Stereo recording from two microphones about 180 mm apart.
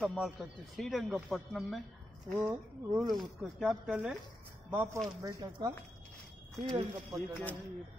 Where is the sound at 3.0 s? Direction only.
Centre (ahead or behind); by 7.2 s 20° right (ahead or behind).